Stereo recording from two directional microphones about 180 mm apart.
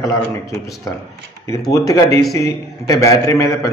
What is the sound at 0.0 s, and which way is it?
A man's voice, 20° left (ahead or behind).